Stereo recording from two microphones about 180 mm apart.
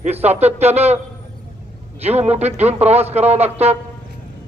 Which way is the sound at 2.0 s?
35° right (ahead or behind).